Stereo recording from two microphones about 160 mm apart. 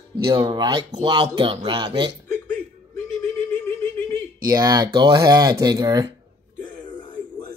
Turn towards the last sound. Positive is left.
turn(degrees=-25)  # may be behind; listen again after turning